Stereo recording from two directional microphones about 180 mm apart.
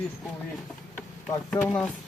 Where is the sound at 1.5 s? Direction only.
5° left (ahead or behind).